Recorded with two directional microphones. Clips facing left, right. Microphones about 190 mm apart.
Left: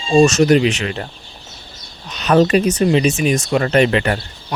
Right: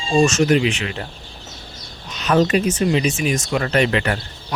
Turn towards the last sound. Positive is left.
turn(degrees=30)  # may be behind; listen again after turning